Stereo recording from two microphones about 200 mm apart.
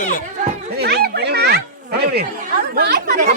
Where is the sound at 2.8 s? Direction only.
50° right (ahead or behind).